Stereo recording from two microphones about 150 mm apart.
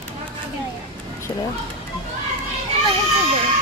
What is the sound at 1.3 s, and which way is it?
Speech, 20° left (ahead or behind).